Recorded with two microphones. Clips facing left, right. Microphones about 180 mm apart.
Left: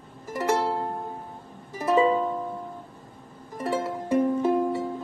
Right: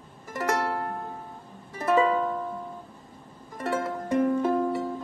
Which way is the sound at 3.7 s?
5° left (ahead or behind).